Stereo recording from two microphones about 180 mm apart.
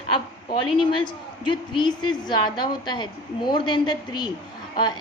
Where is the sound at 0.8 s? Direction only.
25° left (ahead or behind).